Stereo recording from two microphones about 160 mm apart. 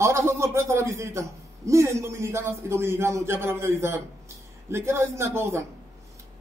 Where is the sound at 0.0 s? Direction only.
15° right (ahead or behind).